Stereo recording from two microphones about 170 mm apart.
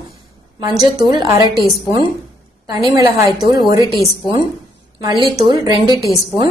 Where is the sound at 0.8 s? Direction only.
25° right (ahead or behind).